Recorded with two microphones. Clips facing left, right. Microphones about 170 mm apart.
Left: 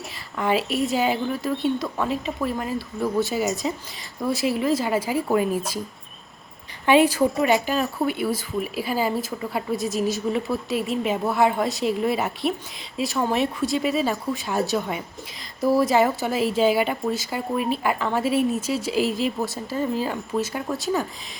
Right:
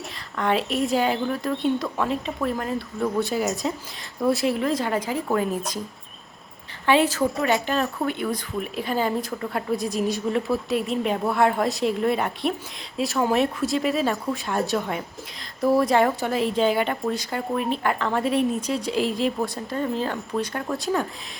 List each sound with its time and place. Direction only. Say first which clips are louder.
0.3 s speech: left 1 dB; 5° left (ahead or behind)
6.8 s a woman's voice: left 3 dB; 15° left (ahead or behind)
7.5 s speech: left 1 dB; centre (ahead or behind)